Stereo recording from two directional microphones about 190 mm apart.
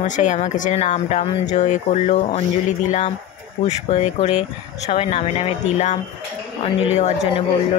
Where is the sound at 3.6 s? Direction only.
35° left (ahead or behind).